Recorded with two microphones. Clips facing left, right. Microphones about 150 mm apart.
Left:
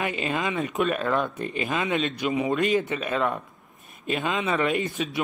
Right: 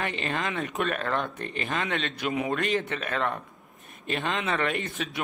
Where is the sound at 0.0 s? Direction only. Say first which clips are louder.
Left 3 dB; 10° left (ahead or behind).